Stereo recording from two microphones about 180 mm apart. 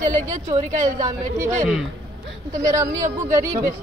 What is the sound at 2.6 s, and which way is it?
Speech, 15° right (ahead or behind).